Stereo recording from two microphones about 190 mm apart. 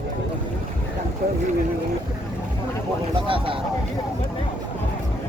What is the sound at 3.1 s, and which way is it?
Speech, 25° right (ahead or behind).